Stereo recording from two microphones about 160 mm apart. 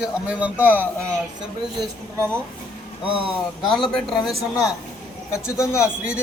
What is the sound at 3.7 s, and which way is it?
Speech, centre (ahead or behind).